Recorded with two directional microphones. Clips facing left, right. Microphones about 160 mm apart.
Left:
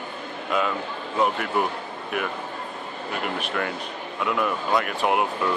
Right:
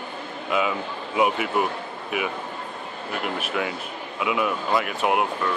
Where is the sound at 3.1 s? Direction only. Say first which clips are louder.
Right 1 dB; 5° right (ahead or behind).